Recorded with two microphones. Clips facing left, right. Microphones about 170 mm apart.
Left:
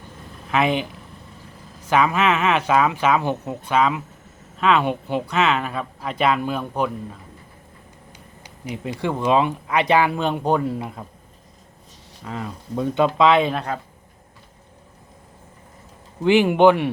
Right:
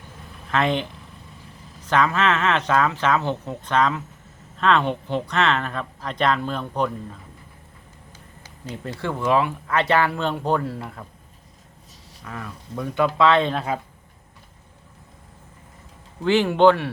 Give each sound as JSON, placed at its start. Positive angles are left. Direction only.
{"t": 0.5, "sound": "speech", "side_deg": 10}
{"t": 1.9, "sound": "speech", "side_deg": 10}
{"t": 12.2, "sound": "speech", "side_deg": 25}
{"t": 16.2, "sound": "speech", "side_deg": 15}